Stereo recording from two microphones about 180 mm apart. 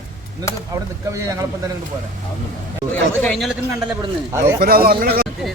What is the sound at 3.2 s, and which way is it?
Speech, centre (ahead or behind).